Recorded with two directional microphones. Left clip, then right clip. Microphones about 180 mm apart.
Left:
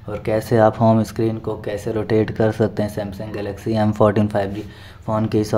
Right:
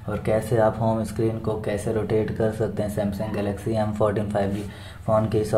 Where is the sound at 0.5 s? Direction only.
50° left (ahead or behind).